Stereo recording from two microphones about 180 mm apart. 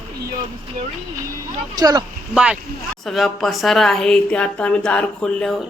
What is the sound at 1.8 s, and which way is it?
Speech, 20° right (ahead or behind).